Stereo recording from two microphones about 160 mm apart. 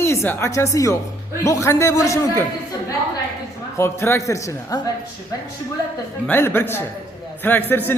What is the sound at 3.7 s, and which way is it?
A man's voice, 15° left (ahead or behind).